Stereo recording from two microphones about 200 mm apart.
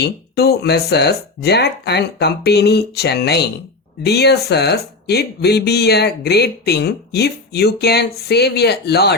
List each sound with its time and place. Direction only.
0.0 s speech: 50° left (ahead or behind)